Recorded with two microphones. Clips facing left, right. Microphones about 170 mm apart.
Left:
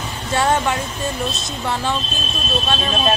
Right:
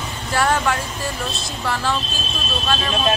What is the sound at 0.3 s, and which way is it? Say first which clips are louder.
Speech: left 1 dB; 25° left (ahead or behind).